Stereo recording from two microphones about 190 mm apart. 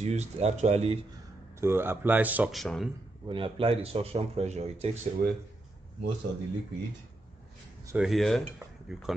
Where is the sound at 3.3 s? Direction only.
30° right (ahead or behind).